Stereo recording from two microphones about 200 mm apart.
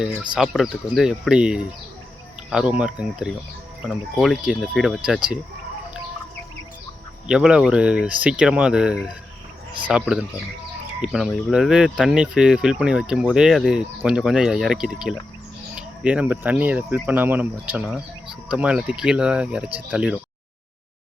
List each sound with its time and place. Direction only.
0.3 s speech: centre (ahead or behind)
7.3 s speech: 5° right (ahead or behind)